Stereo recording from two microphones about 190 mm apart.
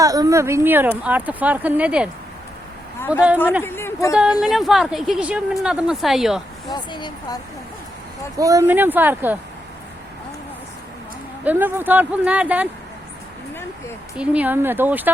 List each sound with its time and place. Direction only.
0.0 s speech: 20° right (ahead or behind)
3.6 s a woman's voice: 10° left (ahead or behind)
4.1 s a woman's voice: 5° right (ahead or behind)
6.7 s speech: 25° left (ahead or behind)
8.4 s speech: 20° right (ahead or behind)
11.4 s speech: 10° right (ahead or behind)
14.2 s speech: 10° right (ahead or behind)